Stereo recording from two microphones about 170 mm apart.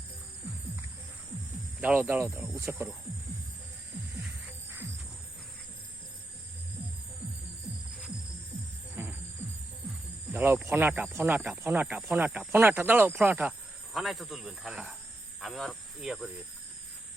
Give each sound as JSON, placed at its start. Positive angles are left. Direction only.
{"t": 1.8, "sound": "speech", "side_deg": -10}
{"t": 10.3, "sound": "speech", "side_deg": -10}
{"t": 15.4, "sound": "cricket", "side_deg": 0}